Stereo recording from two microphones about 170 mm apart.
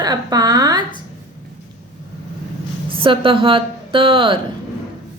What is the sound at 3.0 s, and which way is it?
A woman's voice, 30° right (ahead or behind).